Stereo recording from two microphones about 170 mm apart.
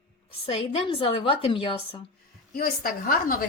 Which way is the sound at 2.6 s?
60° left (ahead or behind).